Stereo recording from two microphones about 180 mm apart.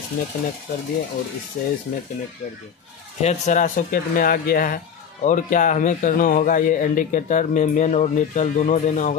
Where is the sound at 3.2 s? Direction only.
40° left (ahead or behind).